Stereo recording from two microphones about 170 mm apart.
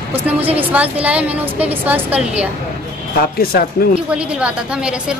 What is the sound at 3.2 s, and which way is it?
Speech, 60° left (ahead or behind).